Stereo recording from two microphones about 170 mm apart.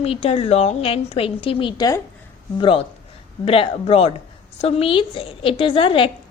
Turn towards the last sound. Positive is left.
turn(degrees=30)  # may be behind; listen again after turning